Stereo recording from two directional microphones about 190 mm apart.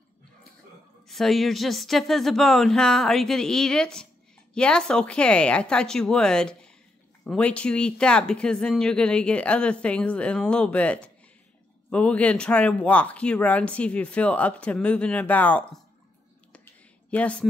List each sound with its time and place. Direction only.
1.0 s speech: centre (ahead or behind)
17.1 s speech: 5° left (ahead or behind)